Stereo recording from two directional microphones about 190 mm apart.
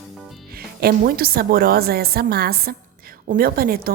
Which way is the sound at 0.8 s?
55° right (ahead or behind).